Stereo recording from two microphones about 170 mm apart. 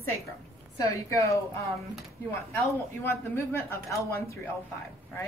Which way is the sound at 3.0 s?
15° left (ahead or behind).